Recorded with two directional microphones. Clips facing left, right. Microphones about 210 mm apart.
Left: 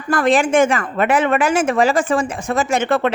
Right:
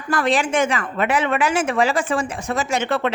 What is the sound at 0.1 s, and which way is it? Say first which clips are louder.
A woman's voice: left 5 dB; 50° left (ahead or behind).